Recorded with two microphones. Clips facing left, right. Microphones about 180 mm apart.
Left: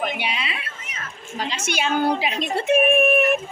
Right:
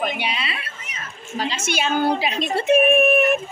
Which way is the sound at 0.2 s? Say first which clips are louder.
Right 1 dB; 10° left (ahead or behind).